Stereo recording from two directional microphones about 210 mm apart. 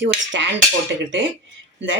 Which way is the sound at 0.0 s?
60° right (ahead or behind).